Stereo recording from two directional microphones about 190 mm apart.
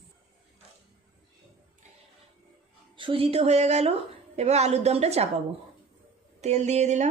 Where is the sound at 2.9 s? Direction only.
25° right (ahead or behind).